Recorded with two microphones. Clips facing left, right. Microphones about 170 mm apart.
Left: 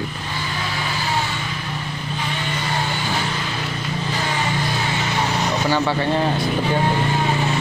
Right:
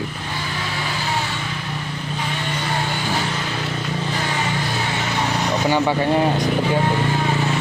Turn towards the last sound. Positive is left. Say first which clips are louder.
# right 2 dB
turn(degrees=-15)  # may be behind; listen again after turning